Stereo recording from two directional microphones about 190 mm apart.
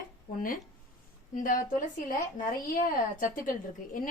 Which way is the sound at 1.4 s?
45° left (ahead or behind).